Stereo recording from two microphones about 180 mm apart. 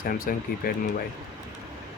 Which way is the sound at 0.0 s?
55° left (ahead or behind).